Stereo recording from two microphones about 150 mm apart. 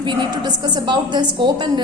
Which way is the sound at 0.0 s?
30° right (ahead or behind).